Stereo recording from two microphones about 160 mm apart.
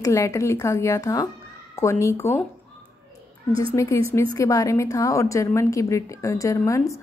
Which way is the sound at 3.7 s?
20° left (ahead or behind).